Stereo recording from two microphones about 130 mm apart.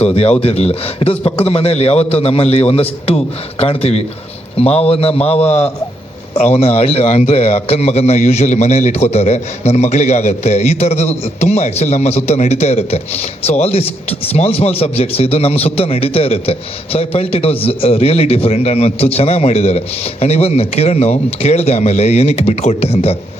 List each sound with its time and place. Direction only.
0.0 s a man's voice: 50° left (ahead or behind)